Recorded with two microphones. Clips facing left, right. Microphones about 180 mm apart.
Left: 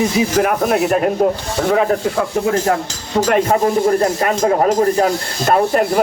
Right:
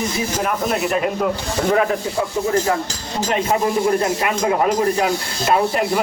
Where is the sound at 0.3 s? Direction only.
60° left (ahead or behind).